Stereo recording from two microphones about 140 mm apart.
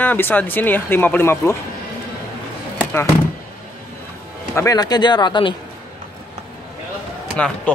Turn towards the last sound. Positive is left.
turn(degrees=10)  # may be behind; listen again after turning